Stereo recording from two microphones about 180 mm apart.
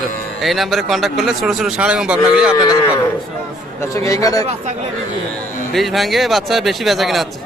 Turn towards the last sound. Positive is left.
turn(degrees=0)  # may be behind; listen again after turning